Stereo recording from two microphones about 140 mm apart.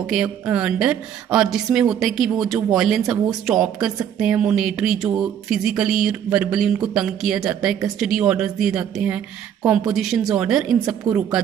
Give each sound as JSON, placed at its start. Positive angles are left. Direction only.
{"t": 0.0, "sound": "speech", "side_deg": -5}